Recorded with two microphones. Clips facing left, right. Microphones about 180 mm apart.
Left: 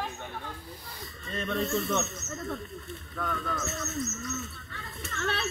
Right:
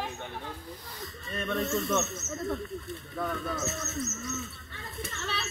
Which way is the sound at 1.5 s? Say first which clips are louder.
Even; 5° right (ahead or behind).